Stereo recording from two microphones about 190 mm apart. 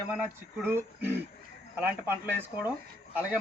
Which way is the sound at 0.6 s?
10° right (ahead or behind).